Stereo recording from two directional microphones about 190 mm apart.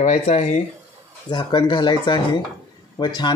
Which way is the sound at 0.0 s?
35° left (ahead or behind).